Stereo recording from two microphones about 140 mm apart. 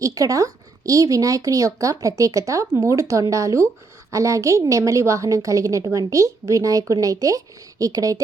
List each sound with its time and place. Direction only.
0.0 s a woman's voice: 25° right (ahead or behind)